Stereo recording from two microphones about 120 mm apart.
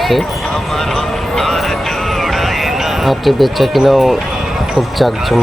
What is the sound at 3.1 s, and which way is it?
Speech, centre (ahead or behind).